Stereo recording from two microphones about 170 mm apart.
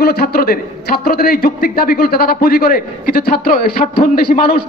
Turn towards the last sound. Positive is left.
turn(degrees=55)  # may be behind; listen again after turning